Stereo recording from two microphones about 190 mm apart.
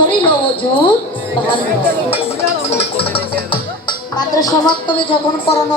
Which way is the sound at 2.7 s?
30° left (ahead or behind).